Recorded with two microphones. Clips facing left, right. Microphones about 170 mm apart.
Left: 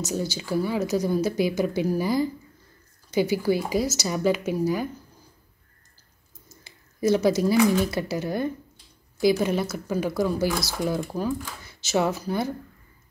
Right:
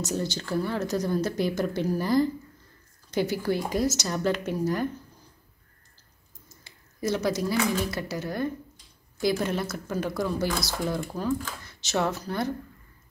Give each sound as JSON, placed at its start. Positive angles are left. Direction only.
{"t": 0.0, "sound": "speech", "side_deg": 5}
{"t": 6.6, "sound": "a sound", "side_deg": 0}
{"t": 7.4, "sound": "a woman's voice", "side_deg": 20}
{"t": 9.2, "sound": "speech", "side_deg": 5}